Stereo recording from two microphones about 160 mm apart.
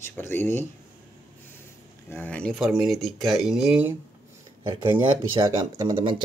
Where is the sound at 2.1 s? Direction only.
10° left (ahead or behind); by 4.0 s 10° right (ahead or behind).